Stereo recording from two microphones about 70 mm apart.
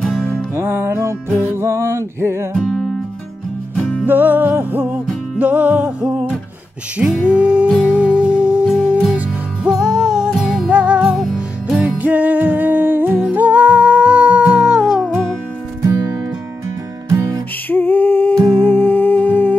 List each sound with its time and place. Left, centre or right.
0.6 s music: right
2.6 s music: centre
3.7 s music: centre
4.0 s music: right
7.2 s music: centre
12.0 s humming: right
15.8 s music: right
17.6 s a sound: left
18.6 s humming: left